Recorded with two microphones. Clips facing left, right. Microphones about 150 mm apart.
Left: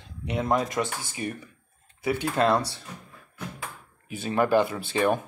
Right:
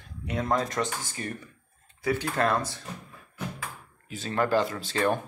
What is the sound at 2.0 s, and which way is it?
Speech, 20° left (ahead or behind).